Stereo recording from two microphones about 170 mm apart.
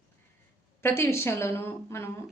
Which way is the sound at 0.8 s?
15° left (ahead or behind).